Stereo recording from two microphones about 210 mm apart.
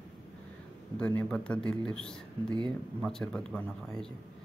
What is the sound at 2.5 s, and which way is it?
Speech, 20° right (ahead or behind).